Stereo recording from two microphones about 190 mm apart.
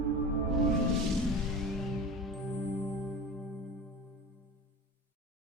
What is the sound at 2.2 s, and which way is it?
Music, centre (ahead or behind).